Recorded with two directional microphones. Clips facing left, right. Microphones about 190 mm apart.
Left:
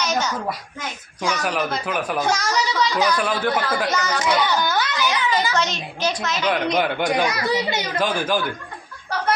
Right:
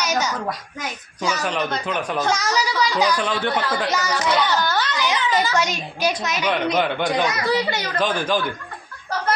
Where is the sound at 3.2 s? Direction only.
5° left (ahead or behind).